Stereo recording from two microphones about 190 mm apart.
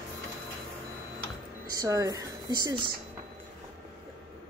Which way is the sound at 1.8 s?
15° right (ahead or behind).